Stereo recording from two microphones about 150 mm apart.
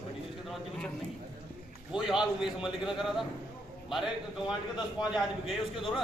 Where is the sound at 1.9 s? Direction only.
5° right (ahead or behind).